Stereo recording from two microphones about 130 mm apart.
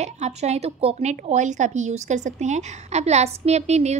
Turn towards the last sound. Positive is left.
turn(degrees=-55)  # may be behind; listen again after turning